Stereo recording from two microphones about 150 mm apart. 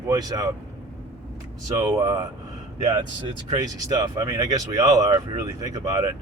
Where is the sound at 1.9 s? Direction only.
20° right (ahead or behind).